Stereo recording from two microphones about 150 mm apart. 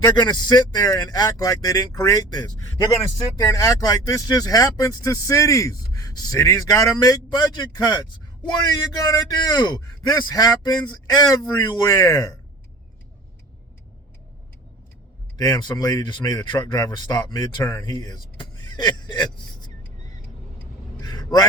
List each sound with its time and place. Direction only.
0.2 s speech: 30° left (ahead or behind)
15.4 s speech: 25° left (ahead or behind)
21.0 s vehicle: 25° left (ahead or behind)